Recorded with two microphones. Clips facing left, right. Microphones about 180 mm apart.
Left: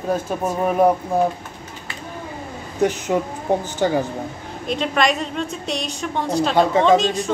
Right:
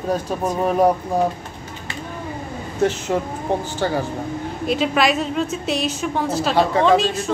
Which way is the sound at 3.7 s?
15° left (ahead or behind).